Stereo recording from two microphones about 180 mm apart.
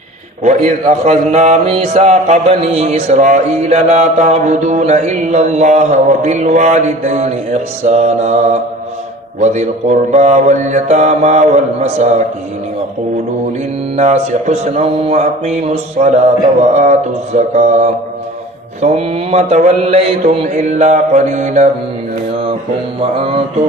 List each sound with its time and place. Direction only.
0.4 s a man's voice: 40° right (ahead or behind)
13.9 s a man's voice: 40° right (ahead or behind)
23.0 s a man's voice: 30° right (ahead or behind)